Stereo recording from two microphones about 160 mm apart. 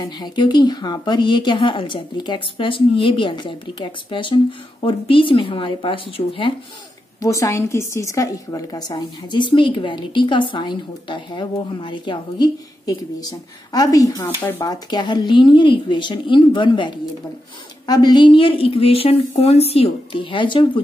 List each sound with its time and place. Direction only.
0.2 s a woman's voice: 30° left (ahead or behind)
7.2 s a woman's voice: 20° left (ahead or behind)